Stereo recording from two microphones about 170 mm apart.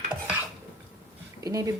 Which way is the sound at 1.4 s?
20° right (ahead or behind).